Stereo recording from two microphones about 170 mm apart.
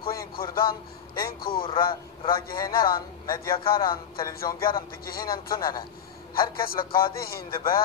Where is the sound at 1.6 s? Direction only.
30° left (ahead or behind).